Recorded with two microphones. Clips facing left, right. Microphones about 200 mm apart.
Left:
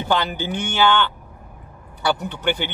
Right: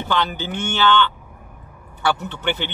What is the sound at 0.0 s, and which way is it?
Speech, 10° left (ahead or behind).